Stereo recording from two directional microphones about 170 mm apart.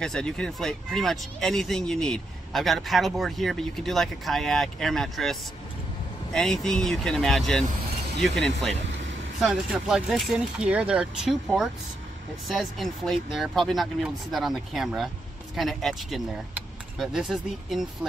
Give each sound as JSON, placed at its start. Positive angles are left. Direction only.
{"t": 0.0, "sound": "speech", "side_deg": 5}